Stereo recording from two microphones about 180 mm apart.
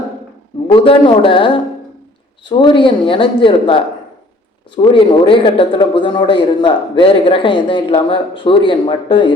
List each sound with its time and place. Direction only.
0.7 s a man's voice: 30° left (ahead or behind)
4.9 s a man's voice: 30° left (ahead or behind)